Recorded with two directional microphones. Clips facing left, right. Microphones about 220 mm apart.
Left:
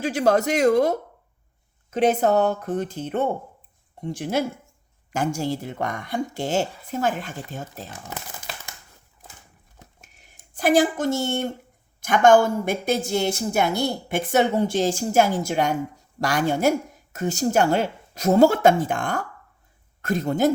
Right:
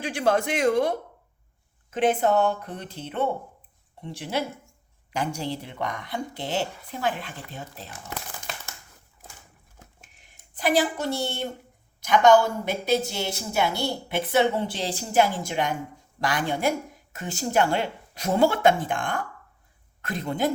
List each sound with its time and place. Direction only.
0.0 s a woman's voice: 40° left (ahead or behind)
10.0 s a sound: 45° left (ahead or behind)
11.9 s a woman's voice: 50° left (ahead or behind)